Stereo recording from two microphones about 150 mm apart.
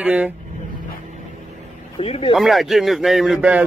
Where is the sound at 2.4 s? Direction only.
Centre (ahead or behind).